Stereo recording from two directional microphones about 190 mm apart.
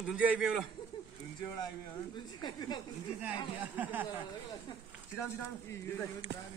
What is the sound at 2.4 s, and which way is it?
Speech, 20° left (ahead or behind).